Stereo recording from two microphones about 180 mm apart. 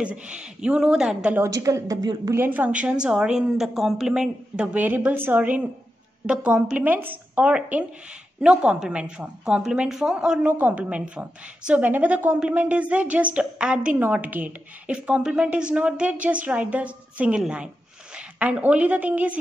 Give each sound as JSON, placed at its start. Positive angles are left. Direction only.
{"t": 0.0, "sound": "a woman's voice", "side_deg": -5}